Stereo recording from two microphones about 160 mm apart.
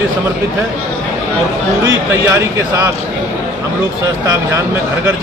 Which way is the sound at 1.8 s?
15° right (ahead or behind).